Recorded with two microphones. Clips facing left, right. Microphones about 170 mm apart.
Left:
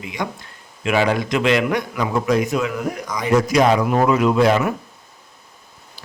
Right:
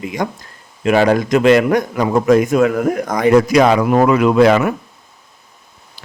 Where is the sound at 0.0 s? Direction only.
45° right (ahead or behind); by 4.7 s 70° right (ahead or behind).